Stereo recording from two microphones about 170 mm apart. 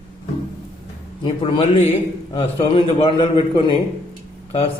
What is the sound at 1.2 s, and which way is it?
A man's voice, 30° left (ahead or behind).